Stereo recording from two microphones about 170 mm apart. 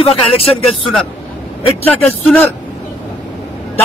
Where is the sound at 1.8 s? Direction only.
10° left (ahead or behind).